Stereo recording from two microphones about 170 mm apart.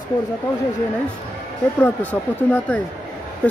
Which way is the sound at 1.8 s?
10° left (ahead or behind).